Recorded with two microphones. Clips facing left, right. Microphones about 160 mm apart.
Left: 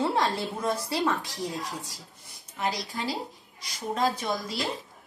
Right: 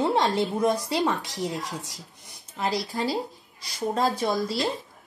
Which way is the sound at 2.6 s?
35° right (ahead or behind).